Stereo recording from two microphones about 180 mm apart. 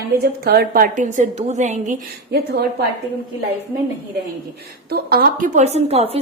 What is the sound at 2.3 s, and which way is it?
Speech, 60° right (ahead or behind).